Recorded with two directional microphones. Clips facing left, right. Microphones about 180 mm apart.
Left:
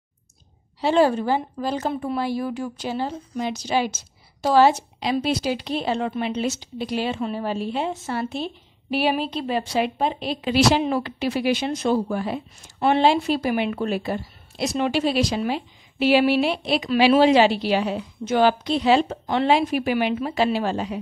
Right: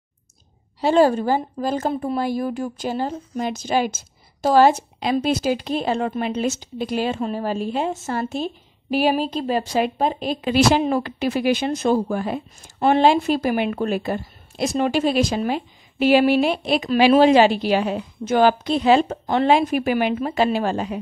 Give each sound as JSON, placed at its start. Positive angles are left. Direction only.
{"t": 0.7, "sound": "a woman's voice", "side_deg": -40}